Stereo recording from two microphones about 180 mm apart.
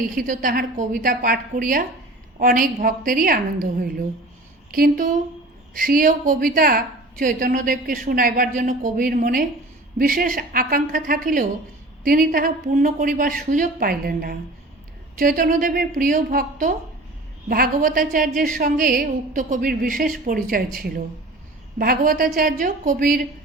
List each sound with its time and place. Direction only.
0.0 s a woman's voice: 50° right (ahead or behind)